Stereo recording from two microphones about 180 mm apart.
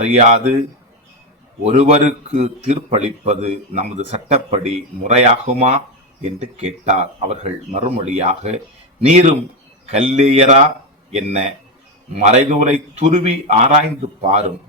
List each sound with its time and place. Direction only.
0.0 s a man's voice: 40° right (ahead or behind)
1.6 s a man's voice: 35° right (ahead or behind)